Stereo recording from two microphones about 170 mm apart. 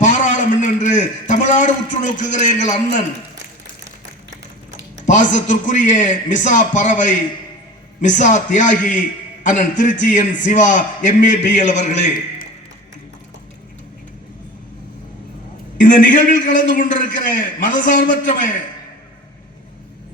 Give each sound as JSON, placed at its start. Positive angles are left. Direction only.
{"t": 0.0, "sound": "a sound", "side_deg": 45}
{"t": 5.0, "sound": "a man's voice", "side_deg": 45}
{"t": 15.8, "sound": "a man's voice", "side_deg": 50}